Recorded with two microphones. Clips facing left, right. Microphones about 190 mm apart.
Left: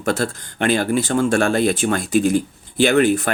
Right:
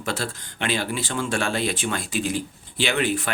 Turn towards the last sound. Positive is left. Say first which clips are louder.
# left 9 dB
turn(degrees=45)  # may be behind; listen again after turning